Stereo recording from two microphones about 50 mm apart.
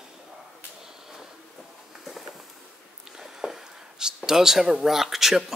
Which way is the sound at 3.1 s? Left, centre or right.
Centre.